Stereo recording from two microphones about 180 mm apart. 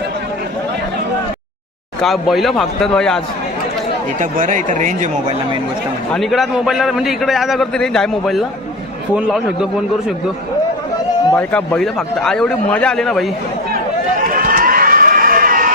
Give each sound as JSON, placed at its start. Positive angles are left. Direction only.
{"t": 2.0, "sound": "a man's voice", "side_deg": 0}
{"t": 4.2, "sound": "speech", "side_deg": -45}
{"t": 6.1, "sound": "a man's voice", "side_deg": 0}
{"t": 11.3, "sound": "a man's voice", "side_deg": 5}
{"t": 14.2, "sound": "run", "side_deg": -50}